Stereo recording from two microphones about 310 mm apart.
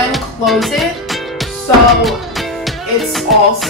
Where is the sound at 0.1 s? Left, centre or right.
Centre.